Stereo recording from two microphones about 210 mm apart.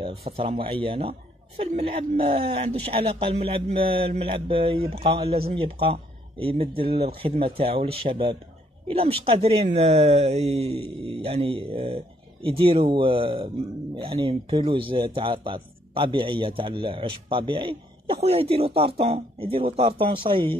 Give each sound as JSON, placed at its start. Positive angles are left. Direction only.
{"t": 0.0, "sound": "a man's voice", "side_deg": -25}